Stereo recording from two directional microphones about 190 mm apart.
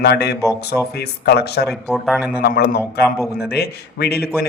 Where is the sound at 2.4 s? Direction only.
55° left (ahead or behind).